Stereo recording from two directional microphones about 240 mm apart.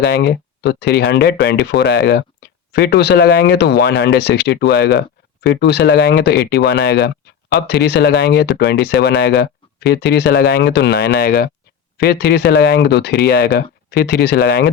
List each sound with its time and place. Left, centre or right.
0.0 s speech: left